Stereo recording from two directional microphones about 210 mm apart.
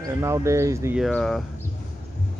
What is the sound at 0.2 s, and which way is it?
Speech, 15° right (ahead or behind).